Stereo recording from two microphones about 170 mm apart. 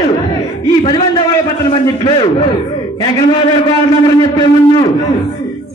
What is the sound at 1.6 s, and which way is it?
A man's voice, 30° left (ahead or behind).